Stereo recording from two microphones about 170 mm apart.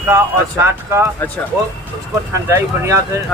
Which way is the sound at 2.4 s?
15° right (ahead or behind).